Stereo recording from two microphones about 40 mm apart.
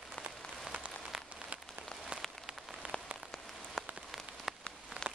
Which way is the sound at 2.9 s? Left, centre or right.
Left.